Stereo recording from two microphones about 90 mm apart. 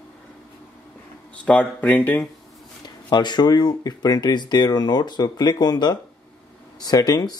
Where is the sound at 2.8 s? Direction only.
55° left (ahead or behind).